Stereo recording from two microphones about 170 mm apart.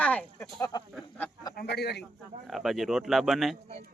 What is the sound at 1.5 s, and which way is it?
Speech, 70° left (ahead or behind).